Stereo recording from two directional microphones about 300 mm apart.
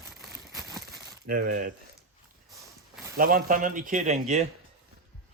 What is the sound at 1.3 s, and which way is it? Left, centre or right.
Speech, right.